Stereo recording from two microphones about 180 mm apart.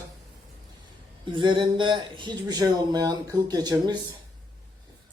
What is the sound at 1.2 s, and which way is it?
Speech, 25° right (ahead or behind).